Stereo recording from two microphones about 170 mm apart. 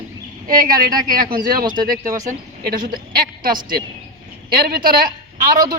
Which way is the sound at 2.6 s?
65° right (ahead or behind).